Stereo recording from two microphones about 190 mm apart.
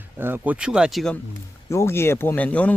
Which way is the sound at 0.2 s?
10° right (ahead or behind).